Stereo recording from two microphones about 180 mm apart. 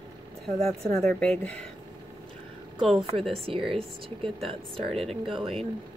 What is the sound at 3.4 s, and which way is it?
Speech, 30° right (ahead or behind).